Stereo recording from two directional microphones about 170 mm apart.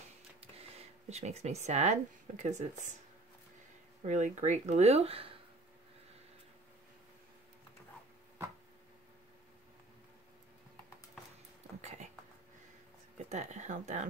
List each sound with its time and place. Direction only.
0.4 s speech: 40° right (ahead or behind)
4.0 s speech: 45° right (ahead or behind)
13.3 s speech: 40° right (ahead or behind)